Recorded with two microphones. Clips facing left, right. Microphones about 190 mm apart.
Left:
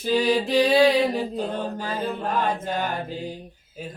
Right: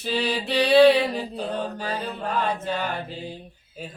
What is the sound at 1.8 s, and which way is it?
Music, 50° left (ahead or behind).